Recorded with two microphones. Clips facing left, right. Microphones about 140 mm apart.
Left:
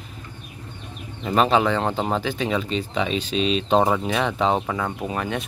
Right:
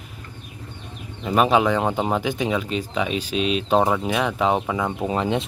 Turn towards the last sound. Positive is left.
turn(degrees=-25)  # may be behind; listen again after turning